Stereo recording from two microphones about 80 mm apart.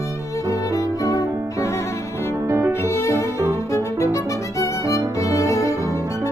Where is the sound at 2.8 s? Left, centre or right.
Left.